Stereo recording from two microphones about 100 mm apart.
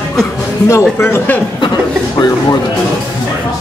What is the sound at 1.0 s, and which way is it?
Speech, 25° left (ahead or behind).